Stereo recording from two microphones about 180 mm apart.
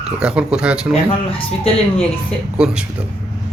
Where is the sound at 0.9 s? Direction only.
30° left (ahead or behind).